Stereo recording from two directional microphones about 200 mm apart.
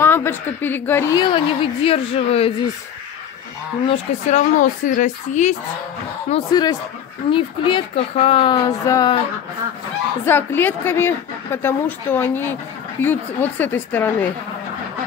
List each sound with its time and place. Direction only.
0.0 s a woman's voice: 10° left (ahead or behind); by 2.5 s 30° left (ahead or behind)
3.8 s speech: 35° left (ahead or behind)
6.3 s speech: 20° left (ahead or behind)
10.2 s a woman's voice: 10° left (ahead or behind)